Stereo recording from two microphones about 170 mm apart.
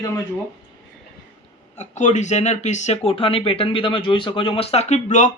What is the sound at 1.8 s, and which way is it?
Speech, 45° left (ahead or behind).